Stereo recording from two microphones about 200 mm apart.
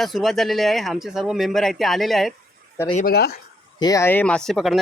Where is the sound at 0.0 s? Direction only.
Centre (ahead or behind).